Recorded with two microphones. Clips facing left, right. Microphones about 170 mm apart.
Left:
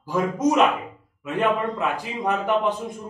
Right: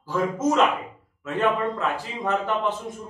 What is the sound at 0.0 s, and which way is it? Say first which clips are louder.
Speech: left 2 dB; 15° left (ahead or behind).